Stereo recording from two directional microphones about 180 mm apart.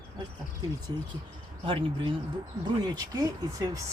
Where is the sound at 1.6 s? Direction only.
30° right (ahead or behind).